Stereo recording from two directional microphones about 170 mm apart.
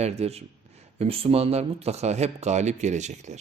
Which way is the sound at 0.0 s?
40° right (ahead or behind).